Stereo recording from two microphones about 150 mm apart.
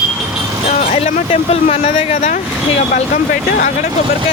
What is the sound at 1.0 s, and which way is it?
Speech, 45° left (ahead or behind).